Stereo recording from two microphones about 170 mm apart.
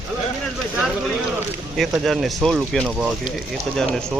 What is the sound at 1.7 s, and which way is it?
A man's voice, centre (ahead or behind).